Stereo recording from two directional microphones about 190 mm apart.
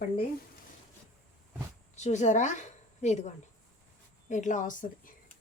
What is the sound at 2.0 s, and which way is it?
A woman's voice, 40° left (ahead or behind).